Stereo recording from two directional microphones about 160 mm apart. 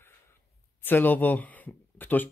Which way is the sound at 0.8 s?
10° left (ahead or behind).